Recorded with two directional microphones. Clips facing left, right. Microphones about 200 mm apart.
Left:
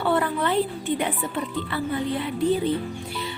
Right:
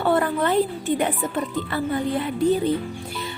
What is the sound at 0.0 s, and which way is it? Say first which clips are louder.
Music: right 2 dB; 45° right (ahead or behind).